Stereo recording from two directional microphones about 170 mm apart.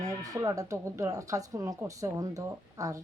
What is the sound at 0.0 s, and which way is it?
Speech, 20° right (ahead or behind).